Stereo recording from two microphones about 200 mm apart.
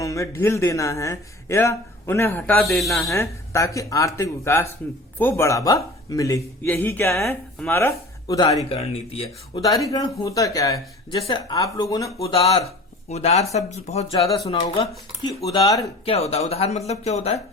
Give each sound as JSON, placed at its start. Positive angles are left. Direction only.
{"t": 0.0, "sound": "a man's voice", "side_deg": 15}
{"t": 3.0, "sound": "a man's voice", "side_deg": 15}
{"t": 8.7, "sound": "speech", "side_deg": 30}
{"t": 9.6, "sound": "a man's voice", "side_deg": 15}
{"t": 12.2, "sound": "a man's voice", "side_deg": 30}
{"t": 16.0, "sound": "speech", "side_deg": 30}